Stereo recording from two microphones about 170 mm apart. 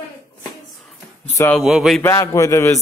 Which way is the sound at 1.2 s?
15° left (ahead or behind).